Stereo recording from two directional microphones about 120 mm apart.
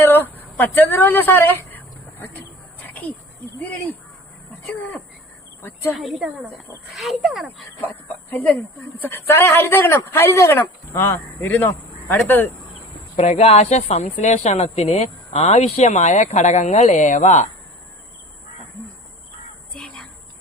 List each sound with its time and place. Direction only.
0.0 s a sound: 15° left (ahead or behind)
4.6 s speech: 15° left (ahead or behind)
6.0 s speech: centre (ahead or behind)
7.8 s speech: 15° left (ahead or behind)
13.1 s a woman's voice: 70° left (ahead or behind)
19.7 s a sound: 5° left (ahead or behind)